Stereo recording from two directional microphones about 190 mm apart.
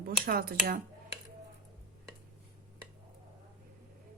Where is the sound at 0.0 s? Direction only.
50° right (ahead or behind).